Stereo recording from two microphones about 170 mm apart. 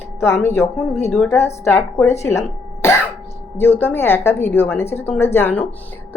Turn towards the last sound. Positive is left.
turn(degrees=10)  # may be behind; listen again after turning